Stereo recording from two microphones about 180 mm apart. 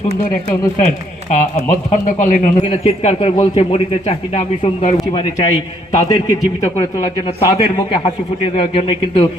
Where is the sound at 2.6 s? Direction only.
35° left (ahead or behind).